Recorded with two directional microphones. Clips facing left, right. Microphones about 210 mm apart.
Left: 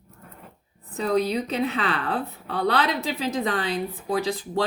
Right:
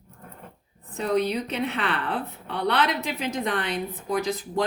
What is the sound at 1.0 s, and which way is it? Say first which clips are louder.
A woman's voice: left 1 dB; 35° left (ahead or behind).